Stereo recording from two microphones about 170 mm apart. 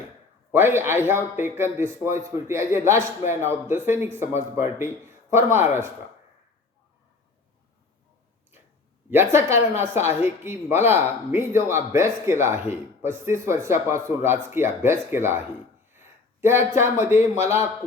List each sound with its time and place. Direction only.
0.5 s a man's voice: 15° right (ahead or behind)
9.0 s a man's voice: 15° right (ahead or behind)
15.9 s a sound: 15° right (ahead or behind)
16.7 s a man's voice: 15° right (ahead or behind)